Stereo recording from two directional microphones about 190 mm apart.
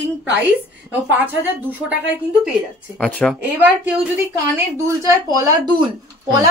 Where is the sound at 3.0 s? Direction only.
5° left (ahead or behind).